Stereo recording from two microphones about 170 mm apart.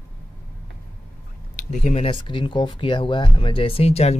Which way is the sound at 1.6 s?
45° left (ahead or behind).